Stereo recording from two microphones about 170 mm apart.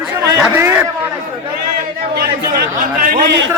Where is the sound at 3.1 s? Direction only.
75° right (ahead or behind).